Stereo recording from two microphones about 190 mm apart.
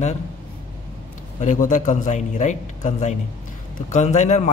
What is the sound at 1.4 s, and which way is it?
A man's voice, 40° left (ahead or behind).